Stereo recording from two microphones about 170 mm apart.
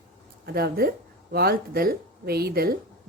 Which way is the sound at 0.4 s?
65° right (ahead or behind).